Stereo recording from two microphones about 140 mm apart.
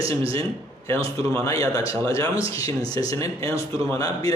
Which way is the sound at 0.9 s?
20° left (ahead or behind).